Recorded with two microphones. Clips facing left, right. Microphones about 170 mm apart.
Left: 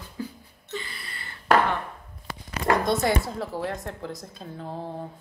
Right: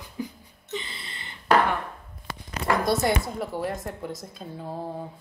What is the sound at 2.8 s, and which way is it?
Speech, centre (ahead or behind).